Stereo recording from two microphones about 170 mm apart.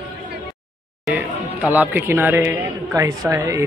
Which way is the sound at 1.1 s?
10° right (ahead or behind).